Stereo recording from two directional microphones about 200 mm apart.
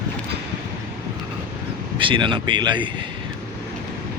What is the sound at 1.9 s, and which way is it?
Speech, 25° right (ahead or behind).